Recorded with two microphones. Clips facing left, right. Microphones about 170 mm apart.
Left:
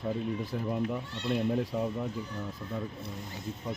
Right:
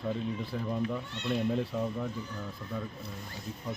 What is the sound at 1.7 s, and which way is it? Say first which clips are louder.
Speech: left 1 dB; 10° left (ahead or behind).